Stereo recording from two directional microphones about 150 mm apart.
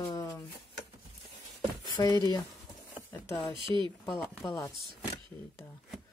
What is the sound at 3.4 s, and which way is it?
Speech, 35° right (ahead or behind).